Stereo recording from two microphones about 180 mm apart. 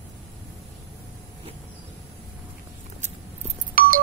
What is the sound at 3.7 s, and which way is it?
Music, 50° right (ahead or behind).